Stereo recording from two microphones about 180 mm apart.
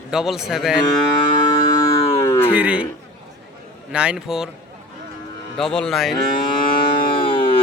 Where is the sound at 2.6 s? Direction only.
10° right (ahead or behind).